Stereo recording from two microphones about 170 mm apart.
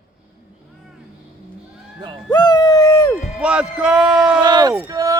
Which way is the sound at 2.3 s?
25° left (ahead or behind).